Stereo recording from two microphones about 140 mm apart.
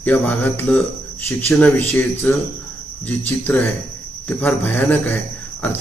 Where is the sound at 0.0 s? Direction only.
10° left (ahead or behind).